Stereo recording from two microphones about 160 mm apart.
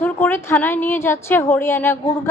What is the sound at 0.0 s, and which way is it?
A woman's voice, 15° left (ahead or behind).